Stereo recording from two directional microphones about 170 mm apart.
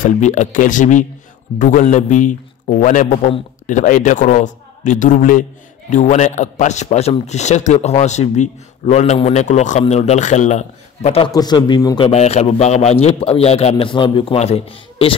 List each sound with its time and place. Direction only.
0.0 s speech: 45° left (ahead or behind)
11.3 s speech: 25° left (ahead or behind)
12.1 s a man's voice: 40° left (ahead or behind)